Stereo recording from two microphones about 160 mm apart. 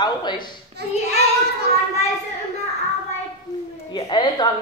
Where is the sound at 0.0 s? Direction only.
25° left (ahead or behind).